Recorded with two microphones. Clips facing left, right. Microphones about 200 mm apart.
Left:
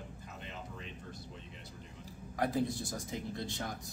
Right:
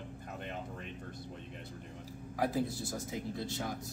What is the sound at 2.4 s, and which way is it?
Speech, 5° right (ahead or behind).